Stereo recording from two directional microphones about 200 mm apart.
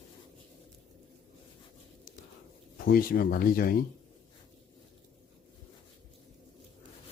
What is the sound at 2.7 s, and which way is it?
Speech, 45° left (ahead or behind).